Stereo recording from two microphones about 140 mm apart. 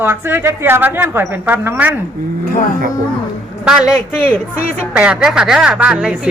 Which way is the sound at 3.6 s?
5° right (ahead or behind).